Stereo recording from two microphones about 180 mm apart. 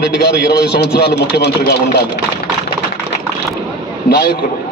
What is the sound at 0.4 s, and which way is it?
A man's voice, 65° left (ahead or behind).